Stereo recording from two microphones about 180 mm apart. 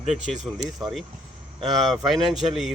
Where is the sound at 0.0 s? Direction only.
40° right (ahead or behind).